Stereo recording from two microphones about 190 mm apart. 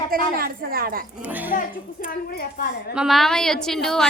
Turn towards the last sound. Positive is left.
turn(degrees=5)  # may be behind; listen again after turning